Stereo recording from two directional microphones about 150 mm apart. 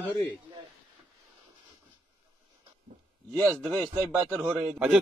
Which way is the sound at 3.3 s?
20° right (ahead or behind).